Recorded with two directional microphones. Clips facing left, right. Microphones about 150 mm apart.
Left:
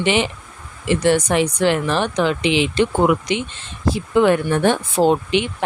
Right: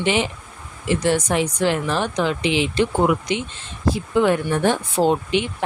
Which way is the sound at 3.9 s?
70° left (ahead or behind).